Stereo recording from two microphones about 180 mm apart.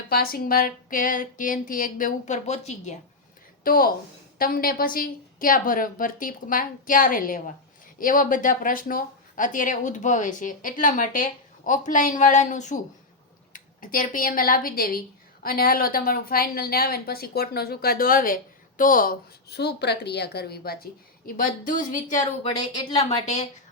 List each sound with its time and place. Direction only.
0.1 s speech: 55° left (ahead or behind); by 3.0 s 40° left (ahead or behind)
3.6 s a woman's voice: 55° left (ahead or behind)
21.2 s speech: 50° left (ahead or behind)
22.8 s a woman's voice: 30° left (ahead or behind)